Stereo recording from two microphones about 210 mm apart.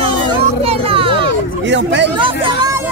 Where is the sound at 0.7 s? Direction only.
25° right (ahead or behind).